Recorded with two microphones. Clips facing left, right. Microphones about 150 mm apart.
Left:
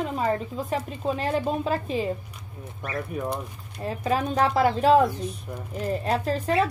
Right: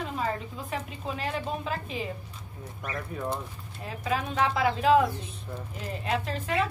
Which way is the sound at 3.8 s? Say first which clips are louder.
Left 5 dB; 40° left (ahead or behind).